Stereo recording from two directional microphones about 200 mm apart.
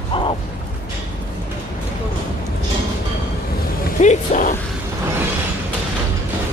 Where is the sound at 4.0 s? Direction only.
40° left (ahead or behind).